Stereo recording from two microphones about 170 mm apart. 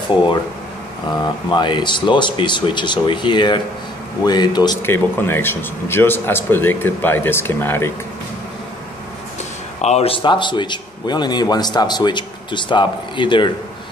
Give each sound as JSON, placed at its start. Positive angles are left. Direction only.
{"t": 0.1, "sound": "a man's voice", "side_deg": 30}
{"t": 4.8, "sound": "a man's voice", "side_deg": 15}
{"t": 9.8, "sound": "a man's voice", "side_deg": 40}